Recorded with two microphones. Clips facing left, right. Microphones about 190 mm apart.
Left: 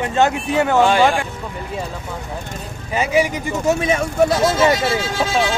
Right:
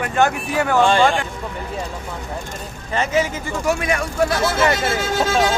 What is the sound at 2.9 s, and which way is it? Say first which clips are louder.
Speech: left 2 dB; 10° left (ahead or behind).